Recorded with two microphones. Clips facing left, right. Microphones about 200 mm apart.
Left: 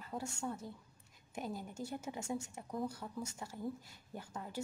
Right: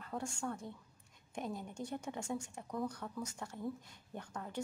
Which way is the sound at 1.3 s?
5° left (ahead or behind).